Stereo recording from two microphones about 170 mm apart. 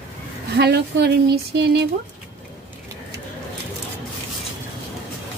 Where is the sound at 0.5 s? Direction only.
75° right (ahead or behind).